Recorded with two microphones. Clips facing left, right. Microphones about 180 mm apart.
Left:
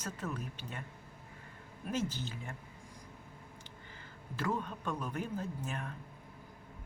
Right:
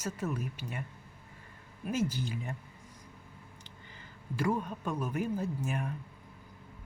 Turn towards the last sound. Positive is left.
turn(degrees=-10)  # may be behind; listen again after turning